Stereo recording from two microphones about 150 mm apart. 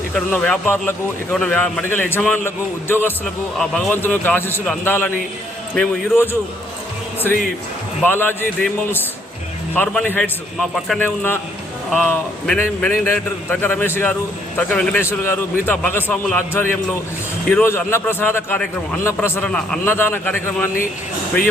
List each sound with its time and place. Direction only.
0.1 s a man's voice: 10° left (ahead or behind)
3.6 s a man's voice: centre (ahead or behind)
3.9 s a man's voice: 15° left (ahead or behind)
8.0 s a man's voice: 15° left (ahead or behind)
9.7 s a man's voice: 10° left (ahead or behind)